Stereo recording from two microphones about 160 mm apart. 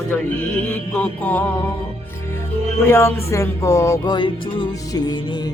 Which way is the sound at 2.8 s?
15° left (ahead or behind).